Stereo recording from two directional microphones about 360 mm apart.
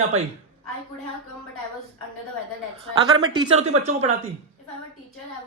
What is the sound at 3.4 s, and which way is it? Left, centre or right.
Speech, centre.